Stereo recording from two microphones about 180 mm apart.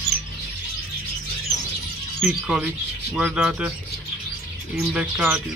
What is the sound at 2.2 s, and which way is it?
Speech, 5° right (ahead or behind).